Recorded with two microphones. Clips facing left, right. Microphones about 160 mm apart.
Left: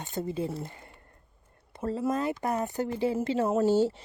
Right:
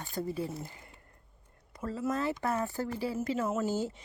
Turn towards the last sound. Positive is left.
turn(degrees=30)  # may be behind; listen again after turning